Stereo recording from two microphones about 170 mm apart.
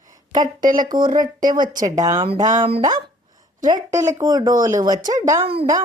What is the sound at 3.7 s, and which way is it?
Speech, 15° right (ahead or behind).